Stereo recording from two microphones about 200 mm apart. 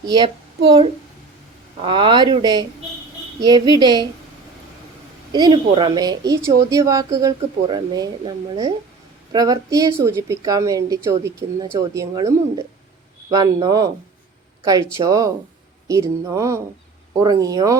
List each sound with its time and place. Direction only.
0.0 s speech: 20° right (ahead or behind)
1.8 s speech: 25° right (ahead or behind)
5.3 s a woman's voice: 20° right (ahead or behind)